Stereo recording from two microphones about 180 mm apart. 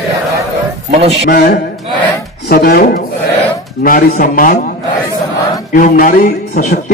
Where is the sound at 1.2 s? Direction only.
55° left (ahead or behind).